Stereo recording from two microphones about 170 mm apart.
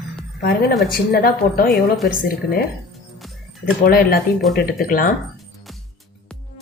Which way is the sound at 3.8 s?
65° left (ahead or behind).